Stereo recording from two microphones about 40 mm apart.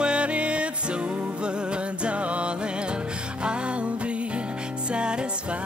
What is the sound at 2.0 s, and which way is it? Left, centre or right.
Music, right.